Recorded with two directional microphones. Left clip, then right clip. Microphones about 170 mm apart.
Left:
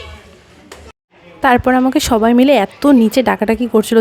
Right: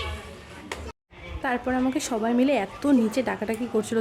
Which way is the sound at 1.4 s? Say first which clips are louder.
Left 15 dB; 55° left (ahead or behind).